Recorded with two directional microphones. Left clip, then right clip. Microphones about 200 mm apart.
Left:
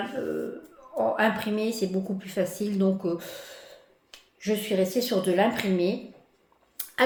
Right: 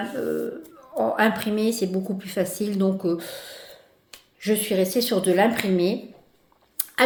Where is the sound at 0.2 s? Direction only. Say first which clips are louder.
Right 4 dB; 40° right (ahead or behind).